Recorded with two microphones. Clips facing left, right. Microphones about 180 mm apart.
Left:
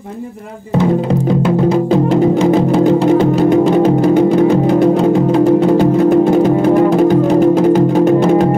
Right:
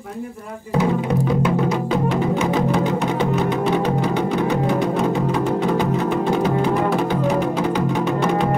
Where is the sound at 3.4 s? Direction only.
45° left (ahead or behind).